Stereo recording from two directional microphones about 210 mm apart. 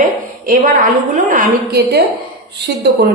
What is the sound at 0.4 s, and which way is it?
A woman's voice, 35° right (ahead or behind).